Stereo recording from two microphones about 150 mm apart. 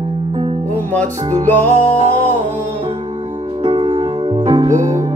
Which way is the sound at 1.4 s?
10° left (ahead or behind).